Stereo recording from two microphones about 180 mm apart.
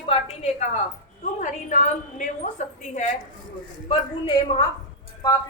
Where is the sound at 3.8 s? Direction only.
30° left (ahead or behind).